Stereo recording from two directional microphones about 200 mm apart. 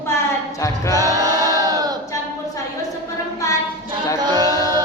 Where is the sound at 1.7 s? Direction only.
20° right (ahead or behind).